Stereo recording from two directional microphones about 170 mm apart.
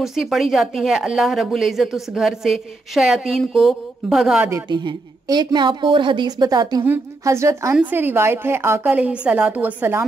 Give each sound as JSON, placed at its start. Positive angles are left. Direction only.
{"t": 0.0, "sound": "speech", "side_deg": 0}
{"t": 4.5, "sound": "a woman's voice", "side_deg": -20}